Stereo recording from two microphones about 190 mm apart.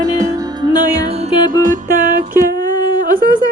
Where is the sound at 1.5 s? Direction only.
45° right (ahead or behind).